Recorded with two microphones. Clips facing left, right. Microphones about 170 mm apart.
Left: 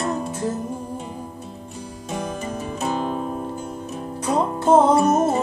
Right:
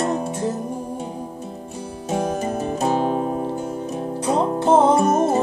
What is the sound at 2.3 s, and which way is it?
Music, 45° right (ahead or behind).